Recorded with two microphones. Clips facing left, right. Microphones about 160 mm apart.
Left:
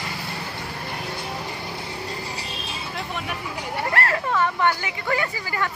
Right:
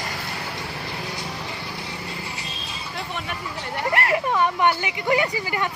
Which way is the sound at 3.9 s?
15° right (ahead or behind).